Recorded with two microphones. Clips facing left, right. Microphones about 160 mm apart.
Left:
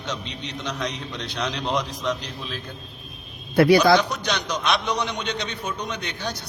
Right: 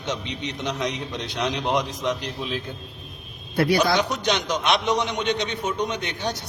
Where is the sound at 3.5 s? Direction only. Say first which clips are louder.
Left 5 dB; 90° left.